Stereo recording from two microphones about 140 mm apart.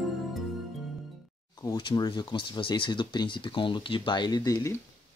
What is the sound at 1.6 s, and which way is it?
Speech, 30° left (ahead or behind).